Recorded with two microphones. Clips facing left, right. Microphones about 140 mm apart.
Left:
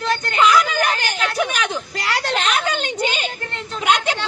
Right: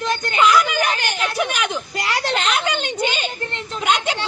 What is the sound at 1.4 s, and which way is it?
Speech, centre (ahead or behind).